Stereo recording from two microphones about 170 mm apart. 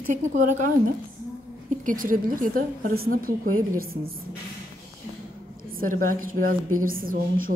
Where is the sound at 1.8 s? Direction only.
50° right (ahead or behind).